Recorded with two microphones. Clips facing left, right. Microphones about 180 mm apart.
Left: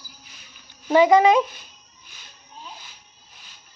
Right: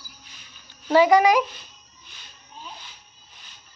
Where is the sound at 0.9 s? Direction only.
20° left (ahead or behind).